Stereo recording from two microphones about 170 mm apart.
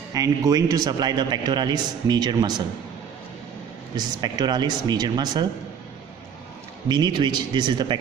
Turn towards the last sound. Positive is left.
turn(degrees=-25)  # may be behind; listen again after turning